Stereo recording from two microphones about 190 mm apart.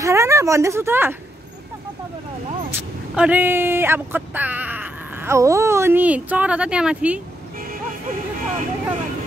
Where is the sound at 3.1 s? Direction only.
5° right (ahead or behind).